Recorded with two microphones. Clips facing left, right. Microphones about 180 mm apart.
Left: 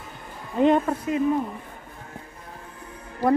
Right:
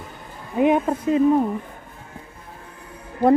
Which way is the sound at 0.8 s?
25° right (ahead or behind).